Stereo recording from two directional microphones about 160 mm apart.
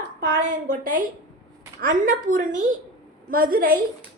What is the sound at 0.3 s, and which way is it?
A woman's voice, 60° right (ahead or behind).